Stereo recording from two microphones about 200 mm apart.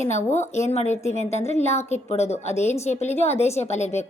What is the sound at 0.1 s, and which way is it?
A woman's voice, 35° left (ahead or behind).